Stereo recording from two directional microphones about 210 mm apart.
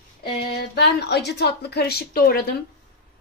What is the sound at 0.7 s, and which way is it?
Speech, 55° left (ahead or behind).